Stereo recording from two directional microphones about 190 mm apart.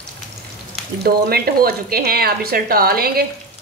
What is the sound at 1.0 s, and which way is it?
Speech, 55° right (ahead or behind).